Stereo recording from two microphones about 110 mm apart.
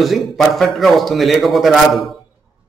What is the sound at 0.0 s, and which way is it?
A man's voice, centre (ahead or behind).